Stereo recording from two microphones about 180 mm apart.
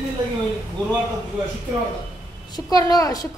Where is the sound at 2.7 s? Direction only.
20° left (ahead or behind).